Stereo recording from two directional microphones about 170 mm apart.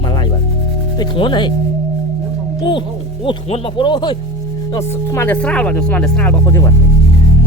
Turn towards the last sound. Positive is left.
turn(degrees=15)  # may be behind; listen again after turning